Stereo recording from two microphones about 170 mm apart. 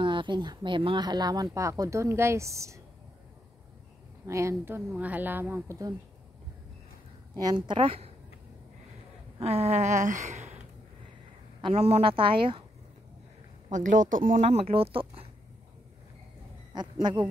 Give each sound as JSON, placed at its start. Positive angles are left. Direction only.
{"t": 0.0, "sound": "speech", "side_deg": -30}
{"t": 4.3, "sound": "speech", "side_deg": -15}
{"t": 7.3, "sound": "speech", "side_deg": -25}
{"t": 9.4, "sound": "speech", "side_deg": -40}
{"t": 11.6, "sound": "speech", "side_deg": -35}
{"t": 13.7, "sound": "speech", "side_deg": -45}
{"t": 14.6, "sound": "speech", "side_deg": -35}
{"t": 16.7, "sound": "speech", "side_deg": -25}